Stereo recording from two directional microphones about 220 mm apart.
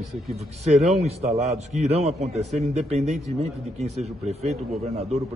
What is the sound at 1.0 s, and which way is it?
A man's voice, 30° right (ahead or behind).